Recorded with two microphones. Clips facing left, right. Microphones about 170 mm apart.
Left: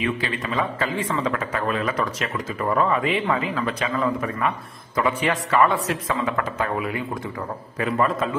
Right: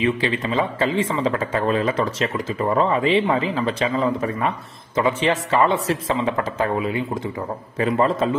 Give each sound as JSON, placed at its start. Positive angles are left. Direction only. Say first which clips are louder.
{"t": 0.0, "sound": "a man's voice", "louder": "right 5 dB", "side_deg": -25}